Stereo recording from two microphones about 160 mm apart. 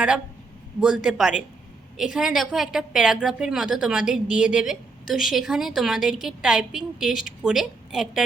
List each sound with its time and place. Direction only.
0.8 s a woman's voice: 5° right (ahead or behind)